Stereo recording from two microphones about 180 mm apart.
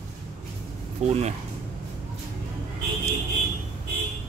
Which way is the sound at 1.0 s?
40° right (ahead or behind).